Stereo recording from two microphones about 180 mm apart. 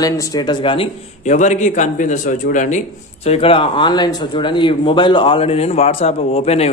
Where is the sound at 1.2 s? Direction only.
45° left (ahead or behind).